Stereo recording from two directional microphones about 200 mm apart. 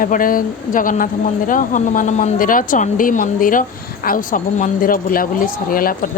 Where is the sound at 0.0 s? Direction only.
45° left (ahead or behind).